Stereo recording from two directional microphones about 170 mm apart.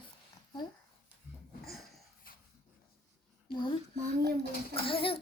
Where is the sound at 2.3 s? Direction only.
60° left (ahead or behind).